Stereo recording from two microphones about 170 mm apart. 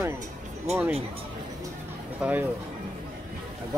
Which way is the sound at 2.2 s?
10° right (ahead or behind).